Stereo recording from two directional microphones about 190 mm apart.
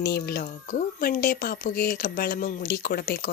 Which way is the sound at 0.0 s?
55° left (ahead or behind).